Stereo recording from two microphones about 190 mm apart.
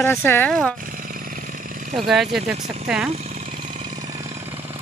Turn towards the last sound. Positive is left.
turn(degrees=-30)  # may be behind; listen again after turning